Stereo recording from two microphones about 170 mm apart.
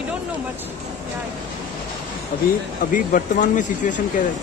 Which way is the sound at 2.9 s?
50° left (ahead or behind).